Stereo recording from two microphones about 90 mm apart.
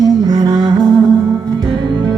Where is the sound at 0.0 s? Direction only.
45° right (ahead or behind).